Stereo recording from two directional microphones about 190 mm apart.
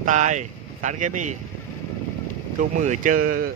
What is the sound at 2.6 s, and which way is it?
Speech, 45° right (ahead or behind).